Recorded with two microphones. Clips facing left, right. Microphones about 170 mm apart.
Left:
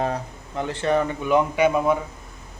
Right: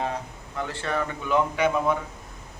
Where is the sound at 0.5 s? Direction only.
20° left (ahead or behind).